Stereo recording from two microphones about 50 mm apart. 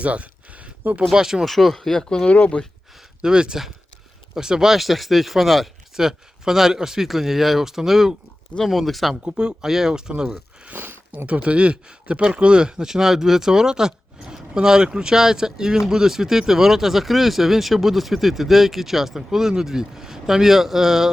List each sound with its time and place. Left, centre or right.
0.0 s speech: right
1.1 s speech: centre
1.5 s speech: centre
2.3 s speech: left
3.2 s speech: centre
8.5 s speech: centre
9.4 s speech: centre
10.2 s speech: right
11.3 s speech: right; by 21.1 s centre